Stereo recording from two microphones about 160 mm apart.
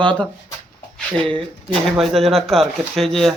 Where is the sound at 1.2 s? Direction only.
35° right (ahead or behind).